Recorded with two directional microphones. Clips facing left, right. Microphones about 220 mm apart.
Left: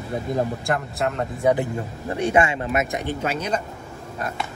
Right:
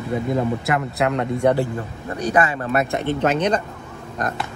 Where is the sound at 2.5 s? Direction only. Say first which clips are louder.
Right 3 dB; 15° left (ahead or behind).